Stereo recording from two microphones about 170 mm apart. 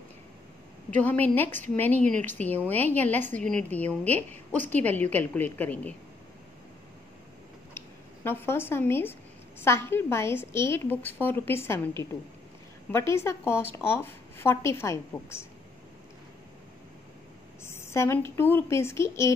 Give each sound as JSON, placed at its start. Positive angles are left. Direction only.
{"t": 0.8, "sound": "a woman's voice", "side_deg": 10}
{"t": 2.0, "sound": "speech", "side_deg": -50}
{"t": 2.3, "sound": "a woman's voice", "side_deg": 10}
{"t": 7.7, "sound": "a sound", "side_deg": 15}
{"t": 9.6, "sound": "a woman's voice", "side_deg": 15}
{"t": 12.9, "sound": "a woman's voice", "side_deg": 15}
{"t": 17.6, "sound": "a woman's voice", "side_deg": 15}